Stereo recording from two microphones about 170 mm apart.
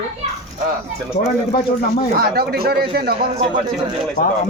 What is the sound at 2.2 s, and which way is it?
Speech, 65° right (ahead or behind).